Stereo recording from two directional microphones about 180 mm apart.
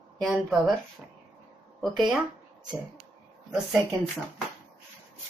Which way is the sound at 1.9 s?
Centre (ahead or behind).